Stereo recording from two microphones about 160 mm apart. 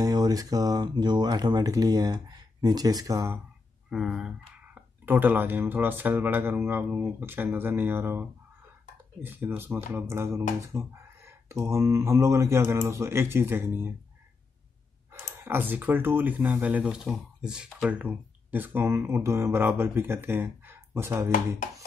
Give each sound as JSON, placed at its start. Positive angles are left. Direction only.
{"t": 0.0, "sound": "speech", "side_deg": -25}
{"t": 3.9, "sound": "speech", "side_deg": -5}
{"t": 15.1, "sound": "speech", "side_deg": -15}